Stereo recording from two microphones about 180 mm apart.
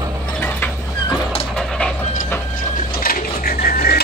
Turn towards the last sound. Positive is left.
turn(degrees=55)  # may be behind; listen again after turning